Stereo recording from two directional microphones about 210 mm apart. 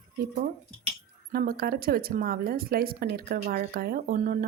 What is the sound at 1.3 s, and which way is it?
Speech, 45° right (ahead or behind).